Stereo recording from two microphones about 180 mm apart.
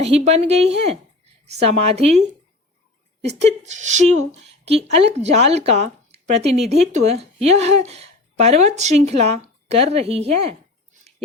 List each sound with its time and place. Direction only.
0.0 s a woman's voice: 35° right (ahead or behind)
3.2 s a woman's voice: 40° right (ahead or behind)